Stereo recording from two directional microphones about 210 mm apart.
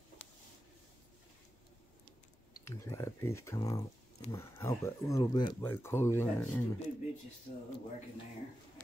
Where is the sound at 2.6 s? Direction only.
15° left (ahead or behind).